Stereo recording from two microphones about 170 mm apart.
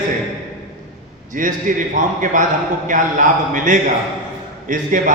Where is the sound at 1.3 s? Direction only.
50° right (ahead or behind).